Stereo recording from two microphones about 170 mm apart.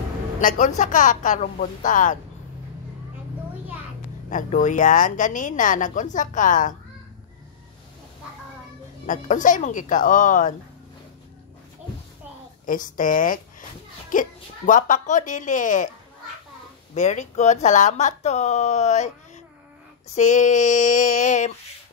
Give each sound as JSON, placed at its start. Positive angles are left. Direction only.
{"t": 0.4, "sound": "speech", "side_deg": 50}
{"t": 4.3, "sound": "speech", "side_deg": 50}
{"t": 9.0, "sound": "speech", "side_deg": 50}
{"t": 12.6, "sound": "speech", "side_deg": 50}
{"t": 16.9, "sound": "speech", "side_deg": 45}